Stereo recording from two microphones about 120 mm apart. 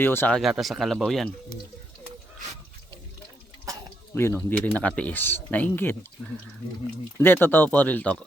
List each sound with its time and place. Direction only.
0.0 s speech: 20° left (ahead or behind)
0.3 s speech: centre (ahead or behind)
4.1 s speech: 20° left (ahead or behind)
7.2 s speech: 15° left (ahead or behind)